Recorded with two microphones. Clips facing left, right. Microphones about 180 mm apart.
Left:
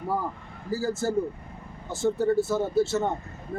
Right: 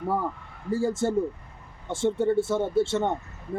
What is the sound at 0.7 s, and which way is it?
A man's voice, 25° right (ahead or behind).